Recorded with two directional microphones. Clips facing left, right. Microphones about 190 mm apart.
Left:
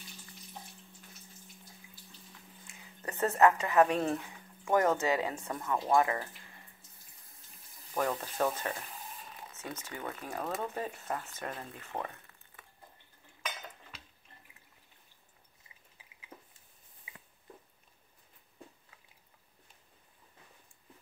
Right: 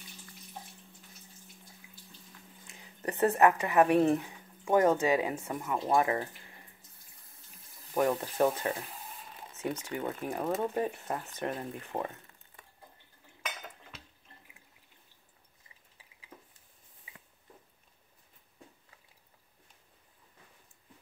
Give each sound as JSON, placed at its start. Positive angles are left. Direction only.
{"t": 2.6, "sound": "speech", "side_deg": -20}
{"t": 7.9, "sound": "speech", "side_deg": -15}